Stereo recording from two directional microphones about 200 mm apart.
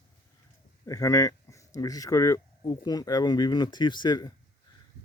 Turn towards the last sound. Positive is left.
turn(degrees=20)  # may be behind; listen again after turning